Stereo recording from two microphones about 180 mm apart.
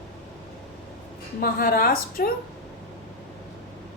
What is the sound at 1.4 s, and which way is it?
Speech, 55° left (ahead or behind).